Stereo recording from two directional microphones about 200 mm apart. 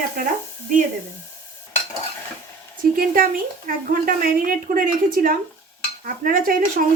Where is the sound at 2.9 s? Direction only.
45° right (ahead or behind).